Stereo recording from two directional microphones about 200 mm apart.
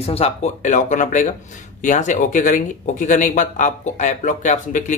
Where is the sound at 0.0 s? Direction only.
30° left (ahead or behind).